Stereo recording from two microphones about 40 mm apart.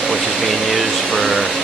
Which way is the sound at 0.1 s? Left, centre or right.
Centre.